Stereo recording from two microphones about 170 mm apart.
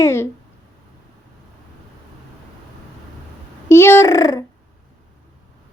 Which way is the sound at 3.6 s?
15° left (ahead or behind).